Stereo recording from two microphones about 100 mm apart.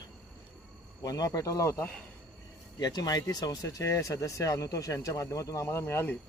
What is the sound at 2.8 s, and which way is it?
Speech, 40° left (ahead or behind).